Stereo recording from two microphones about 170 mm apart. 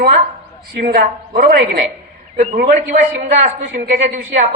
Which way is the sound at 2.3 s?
45° right (ahead or behind).